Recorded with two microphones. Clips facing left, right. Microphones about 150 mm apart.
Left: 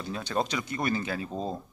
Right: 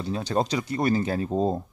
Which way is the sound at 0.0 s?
35° right (ahead or behind).